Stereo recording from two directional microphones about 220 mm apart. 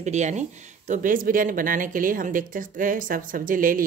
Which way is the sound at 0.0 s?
30° right (ahead or behind).